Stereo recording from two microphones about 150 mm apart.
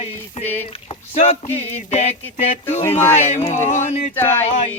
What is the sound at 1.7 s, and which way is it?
Music, 45° left (ahead or behind).